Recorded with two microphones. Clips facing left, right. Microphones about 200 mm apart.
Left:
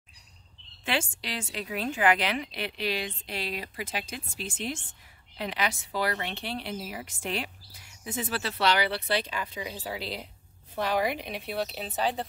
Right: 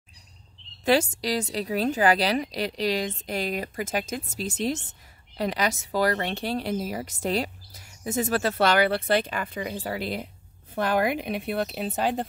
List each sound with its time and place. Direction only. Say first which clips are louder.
0.8 s a woman's voice: right 9 dB; 40° right (ahead or behind)